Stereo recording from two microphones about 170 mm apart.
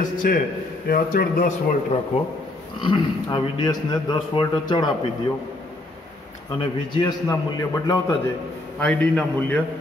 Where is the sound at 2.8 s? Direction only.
25° left (ahead or behind).